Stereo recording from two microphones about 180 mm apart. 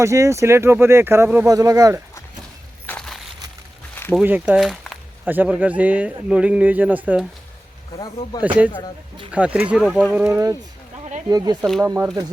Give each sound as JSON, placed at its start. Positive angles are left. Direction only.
{"t": 0.0, "sound": "speech", "side_deg": -15}
{"t": 2.8, "sound": "crushing", "side_deg": 5}
{"t": 4.2, "sound": "speech", "side_deg": -10}
{"t": 5.2, "sound": "speech", "side_deg": -10}
{"t": 8.4, "sound": "speech", "side_deg": -10}